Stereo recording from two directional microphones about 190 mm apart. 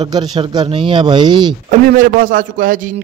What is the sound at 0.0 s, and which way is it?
Speech, 20° right (ahead or behind).